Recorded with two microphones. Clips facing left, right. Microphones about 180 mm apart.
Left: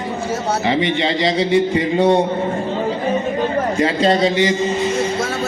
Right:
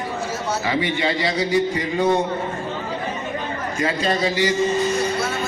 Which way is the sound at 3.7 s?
25° left (ahead or behind).